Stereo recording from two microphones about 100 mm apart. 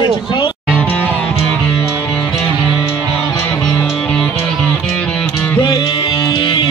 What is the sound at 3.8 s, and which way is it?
Music, 5° left (ahead or behind).